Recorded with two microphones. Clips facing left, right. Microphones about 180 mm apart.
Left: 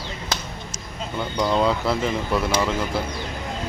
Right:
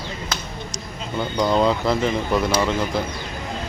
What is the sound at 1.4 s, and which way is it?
A man's voice, centre (ahead or behind).